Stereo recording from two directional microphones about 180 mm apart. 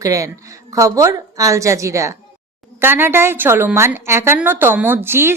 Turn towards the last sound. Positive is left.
turn(degrees=-15)  # may be behind; listen again after turning